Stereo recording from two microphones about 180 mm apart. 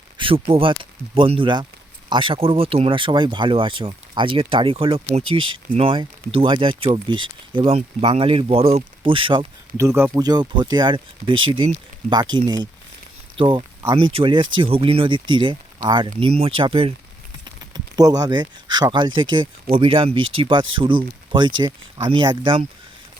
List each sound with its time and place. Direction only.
0.2 s speech: 30° right (ahead or behind)
9.7 s speech: 15° right (ahead or behind)